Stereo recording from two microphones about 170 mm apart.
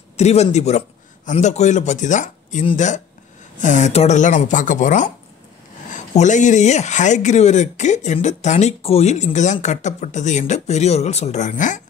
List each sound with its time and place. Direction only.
0.2 s a man's voice: 40° left (ahead or behind)